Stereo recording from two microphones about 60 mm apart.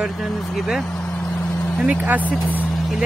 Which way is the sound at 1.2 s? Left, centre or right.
Centre.